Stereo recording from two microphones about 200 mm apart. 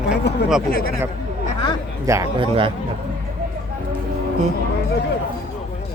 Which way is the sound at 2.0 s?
15° right (ahead or behind).